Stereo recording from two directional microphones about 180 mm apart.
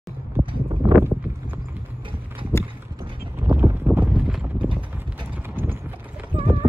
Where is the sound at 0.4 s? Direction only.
30° right (ahead or behind).